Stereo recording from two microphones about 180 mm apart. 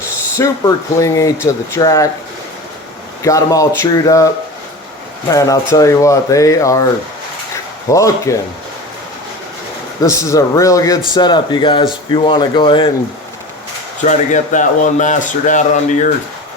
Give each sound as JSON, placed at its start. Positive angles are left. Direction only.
{"t": 0.3, "sound": "speech", "side_deg": 15}
{"t": 3.2, "sound": "speech", "side_deg": 20}
{"t": 5.3, "sound": "speech", "side_deg": 20}
{"t": 7.5, "sound": "a sound", "side_deg": 15}
{"t": 10.0, "sound": "speech", "side_deg": 20}
{"t": 14.0, "sound": "speech", "side_deg": 45}